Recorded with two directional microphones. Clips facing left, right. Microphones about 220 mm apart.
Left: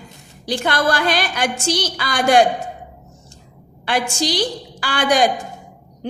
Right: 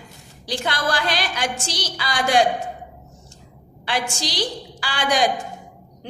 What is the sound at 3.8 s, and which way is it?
A woman's voice, 50° left (ahead or behind).